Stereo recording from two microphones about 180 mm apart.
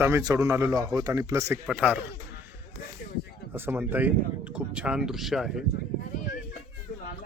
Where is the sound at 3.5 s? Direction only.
10° right (ahead or behind).